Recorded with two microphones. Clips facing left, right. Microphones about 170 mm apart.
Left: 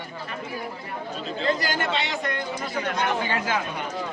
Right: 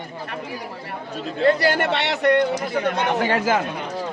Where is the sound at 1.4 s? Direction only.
65° right (ahead or behind).